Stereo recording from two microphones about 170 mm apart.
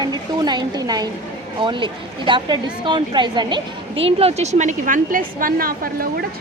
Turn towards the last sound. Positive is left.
turn(degrees=-60)  # may be behind; listen again after turning